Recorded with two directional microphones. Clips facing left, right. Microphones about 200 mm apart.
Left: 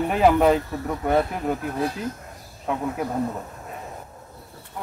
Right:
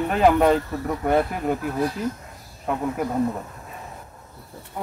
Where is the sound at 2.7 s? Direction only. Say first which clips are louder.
Right 1 dB; centre (ahead or behind).